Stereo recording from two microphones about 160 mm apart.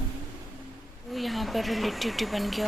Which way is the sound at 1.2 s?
Centre (ahead or behind).